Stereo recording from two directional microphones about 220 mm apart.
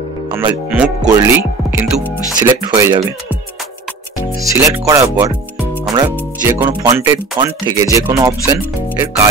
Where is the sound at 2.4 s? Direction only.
15° right (ahead or behind).